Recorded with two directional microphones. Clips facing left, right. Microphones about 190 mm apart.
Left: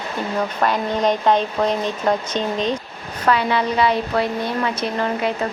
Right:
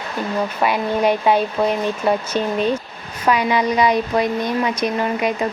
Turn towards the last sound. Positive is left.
turn(degrees=-15)  # may be behind; listen again after turning